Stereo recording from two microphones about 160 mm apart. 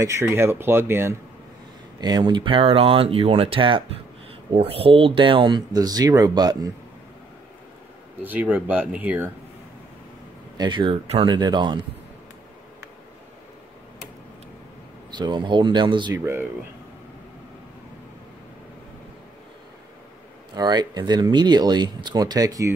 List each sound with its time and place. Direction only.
0.0 s speech: 15° right (ahead or behind)
2.0 s speech: 25° right (ahead or behind)
8.2 s speech: 10° right (ahead or behind)
10.6 s speech: 30° right (ahead or behind)
15.0 s speech: 30° right (ahead or behind)
20.5 s speech: 25° right (ahead or behind)